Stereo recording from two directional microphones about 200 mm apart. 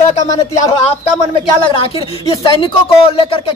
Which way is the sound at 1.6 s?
25° left (ahead or behind).